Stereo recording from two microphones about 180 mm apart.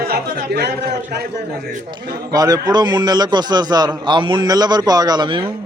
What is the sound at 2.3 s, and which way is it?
A man's voice, 20° right (ahead or behind).